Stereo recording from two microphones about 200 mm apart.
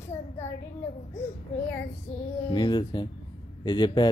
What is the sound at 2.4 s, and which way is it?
Speech, 25° left (ahead or behind).